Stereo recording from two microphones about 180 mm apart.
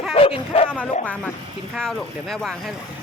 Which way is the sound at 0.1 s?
35° left (ahead or behind).